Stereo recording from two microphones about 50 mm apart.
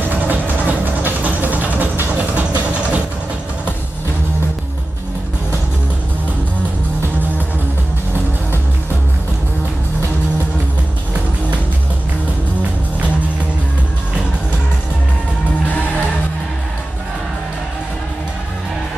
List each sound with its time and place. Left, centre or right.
0.0 s music: right
2.1 s vehicle: right